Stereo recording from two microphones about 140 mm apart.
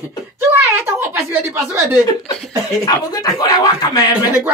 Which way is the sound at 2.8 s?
25° left (ahead or behind).